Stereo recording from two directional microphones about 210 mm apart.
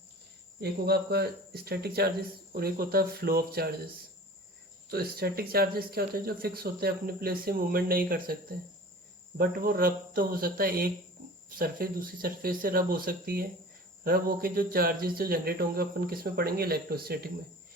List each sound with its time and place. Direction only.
0.6 s speech: 50° right (ahead or behind)
4.9 s speech: 45° right (ahead or behind)
9.4 s speech: 45° right (ahead or behind)